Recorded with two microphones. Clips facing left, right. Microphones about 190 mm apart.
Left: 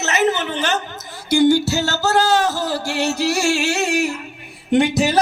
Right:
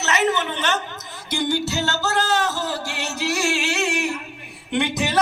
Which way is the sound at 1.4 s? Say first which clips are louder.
Left 8 dB; 35° left (ahead or behind).